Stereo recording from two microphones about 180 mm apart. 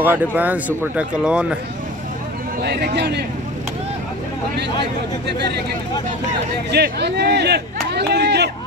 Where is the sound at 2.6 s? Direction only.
65° right (ahead or behind).